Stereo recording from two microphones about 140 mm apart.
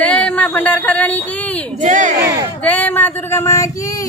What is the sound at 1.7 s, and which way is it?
Speech, 60° right (ahead or behind).